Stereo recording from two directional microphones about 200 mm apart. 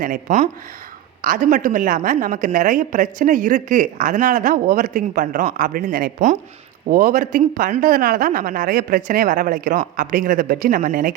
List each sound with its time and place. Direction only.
0.0 s a woman's voice: 40° right (ahead or behind)